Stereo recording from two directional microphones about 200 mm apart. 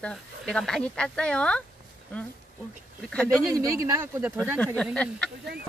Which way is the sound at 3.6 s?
15° right (ahead or behind).